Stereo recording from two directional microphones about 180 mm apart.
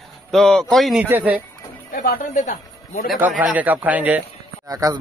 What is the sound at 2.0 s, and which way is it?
Speech, 45° left (ahead or behind).